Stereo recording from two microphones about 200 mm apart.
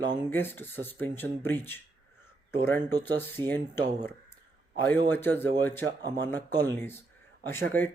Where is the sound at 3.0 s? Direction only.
10° left (ahead or behind).